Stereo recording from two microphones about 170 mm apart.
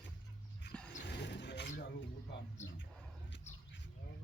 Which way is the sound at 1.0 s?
90° left.